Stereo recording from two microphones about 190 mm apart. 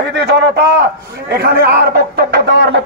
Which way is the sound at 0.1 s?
60° right (ahead or behind).